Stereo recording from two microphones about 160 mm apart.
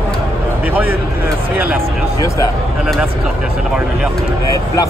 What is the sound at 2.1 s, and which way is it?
Speech, 20° left (ahead or behind).